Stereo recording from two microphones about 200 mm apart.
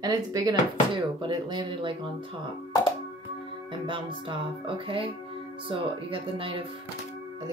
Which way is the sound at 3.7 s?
25° right (ahead or behind).